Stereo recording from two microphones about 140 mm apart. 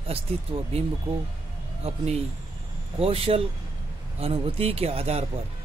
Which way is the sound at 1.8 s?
50° right (ahead or behind).